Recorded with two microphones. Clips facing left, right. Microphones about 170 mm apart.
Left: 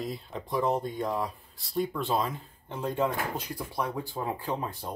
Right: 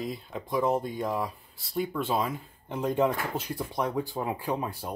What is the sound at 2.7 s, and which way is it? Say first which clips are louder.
Speech: right 3 dB; 20° right (ahead or behind).